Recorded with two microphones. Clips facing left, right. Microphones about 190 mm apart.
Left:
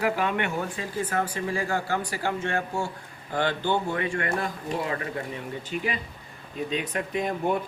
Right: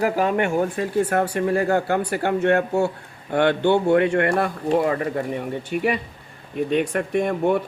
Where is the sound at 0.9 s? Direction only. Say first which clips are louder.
Right 7 dB; 65° right (ahead or behind).